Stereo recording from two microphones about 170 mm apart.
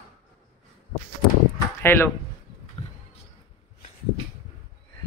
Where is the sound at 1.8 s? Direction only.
15° left (ahead or behind).